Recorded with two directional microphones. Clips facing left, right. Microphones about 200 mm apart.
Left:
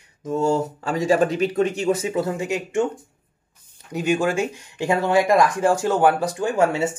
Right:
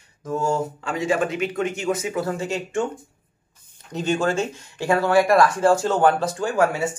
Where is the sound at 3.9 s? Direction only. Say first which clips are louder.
Left 1 dB; 10° left (ahead or behind).